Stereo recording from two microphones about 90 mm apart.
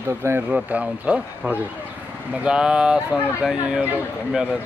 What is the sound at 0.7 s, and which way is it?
Speech, 15° right (ahead or behind).